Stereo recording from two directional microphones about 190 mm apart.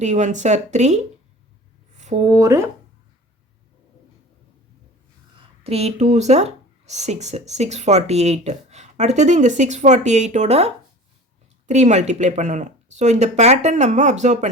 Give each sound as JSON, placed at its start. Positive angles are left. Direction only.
{"t": 0.0, "sound": "speech", "side_deg": -40}
{"t": 2.0, "sound": "a sound", "side_deg": -40}
{"t": 2.3, "sound": "speech", "side_deg": -15}
{"t": 5.4, "sound": "speech", "side_deg": -35}
{"t": 11.7, "sound": "speech", "side_deg": -35}